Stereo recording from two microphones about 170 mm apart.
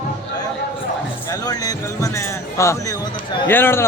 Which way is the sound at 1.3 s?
20° left (ahead or behind).